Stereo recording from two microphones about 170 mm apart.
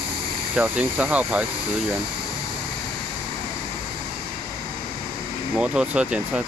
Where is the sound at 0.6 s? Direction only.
10° right (ahead or behind).